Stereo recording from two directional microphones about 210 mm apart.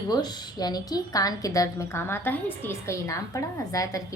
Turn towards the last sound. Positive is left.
turn(degrees=15)  # may be behind; listen again after turning